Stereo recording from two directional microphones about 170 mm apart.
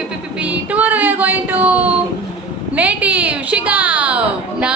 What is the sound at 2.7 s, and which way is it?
A woman's voice, 10° right (ahead or behind).